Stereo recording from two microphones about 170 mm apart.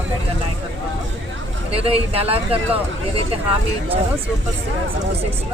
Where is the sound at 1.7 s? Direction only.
35° right (ahead or behind).